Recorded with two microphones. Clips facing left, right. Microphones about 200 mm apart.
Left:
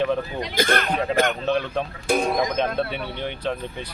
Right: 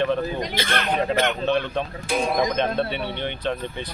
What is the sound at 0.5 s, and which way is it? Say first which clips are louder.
Speech: left 6 dB; 50° left (ahead or behind).